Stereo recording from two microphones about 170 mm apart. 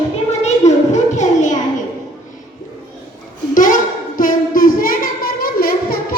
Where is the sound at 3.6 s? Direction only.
50° left (ahead or behind).